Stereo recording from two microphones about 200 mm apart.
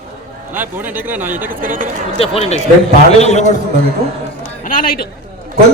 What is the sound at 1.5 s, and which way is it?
Speech, 45° right (ahead or behind).